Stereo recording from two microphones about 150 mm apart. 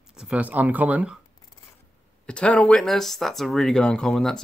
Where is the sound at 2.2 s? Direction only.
5° left (ahead or behind).